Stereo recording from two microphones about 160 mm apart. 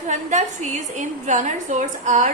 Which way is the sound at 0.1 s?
50° right (ahead or behind).